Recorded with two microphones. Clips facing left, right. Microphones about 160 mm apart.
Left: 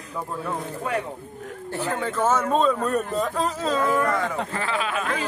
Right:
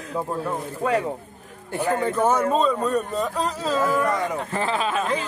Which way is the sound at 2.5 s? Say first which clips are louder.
Even; centre (ahead or behind).